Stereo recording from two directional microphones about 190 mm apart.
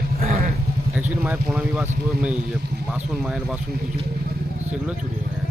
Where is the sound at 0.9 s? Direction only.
10° right (ahead or behind).